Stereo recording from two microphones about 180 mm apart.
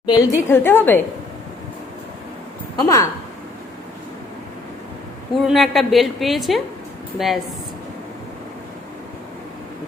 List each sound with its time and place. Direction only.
0.1 s a woman's voice: 20° left (ahead or behind)
2.8 s a woman's voice: 15° left (ahead or behind)
5.4 s a woman's voice: centre (ahead or behind)